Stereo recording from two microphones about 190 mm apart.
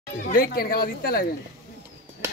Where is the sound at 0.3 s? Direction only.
50° left (ahead or behind).